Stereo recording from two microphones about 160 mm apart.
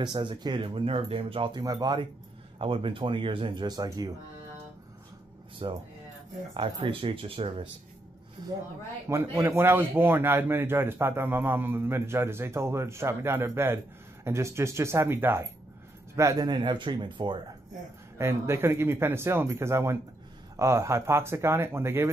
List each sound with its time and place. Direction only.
0.0 s speech: 30° right (ahead or behind)
5.6 s a man's voice: 30° right (ahead or behind)
18.1 s a man's voice: 15° right (ahead or behind)